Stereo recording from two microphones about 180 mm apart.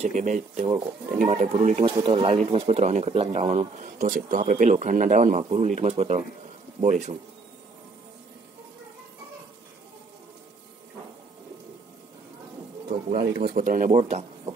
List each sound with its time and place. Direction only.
0.0 s speech: 40° right (ahead or behind)
13.1 s speech: 60° right (ahead or behind); by 14.2 s 45° right (ahead or behind)